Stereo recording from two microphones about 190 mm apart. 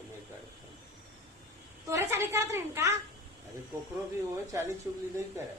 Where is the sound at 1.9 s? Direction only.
15° right (ahead or behind).